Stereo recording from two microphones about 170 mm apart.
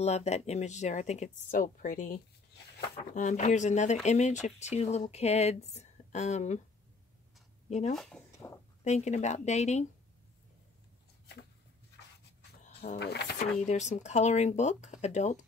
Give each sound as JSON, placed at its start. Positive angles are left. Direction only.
{"t": 0.0, "sound": "speech", "side_deg": 40}
{"t": 7.9, "sound": "speech", "side_deg": 0}
{"t": 8.4, "sound": "speech", "side_deg": 15}
{"t": 8.8, "sound": "speech", "side_deg": 40}
{"t": 12.9, "sound": "speech", "side_deg": 75}
{"t": 13.4, "sound": "speech", "side_deg": 45}